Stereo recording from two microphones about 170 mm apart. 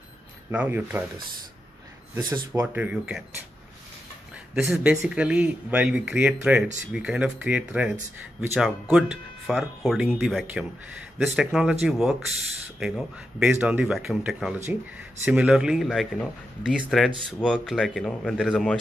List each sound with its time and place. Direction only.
0.5 s speech: 10° right (ahead or behind)
2.1 s speech: 25° right (ahead or behind)
2.6 s speech: 10° right (ahead or behind)
4.6 s speech: 5° right (ahead or behind)